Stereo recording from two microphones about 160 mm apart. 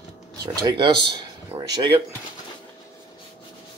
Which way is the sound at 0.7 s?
30° right (ahead or behind).